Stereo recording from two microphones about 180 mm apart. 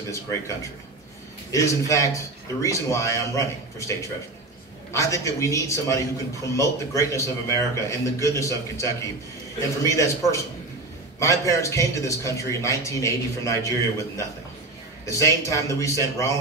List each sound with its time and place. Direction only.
1.5 s a man's voice: 15° left (ahead or behind)